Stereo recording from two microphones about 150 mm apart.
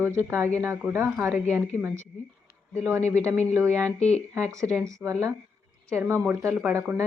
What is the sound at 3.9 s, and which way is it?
Speech, 45° left (ahead or behind).